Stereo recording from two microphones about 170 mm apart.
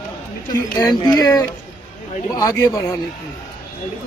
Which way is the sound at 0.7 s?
25° left (ahead or behind).